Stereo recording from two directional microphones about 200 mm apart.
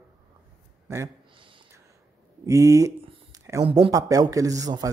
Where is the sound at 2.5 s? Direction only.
15° right (ahead or behind).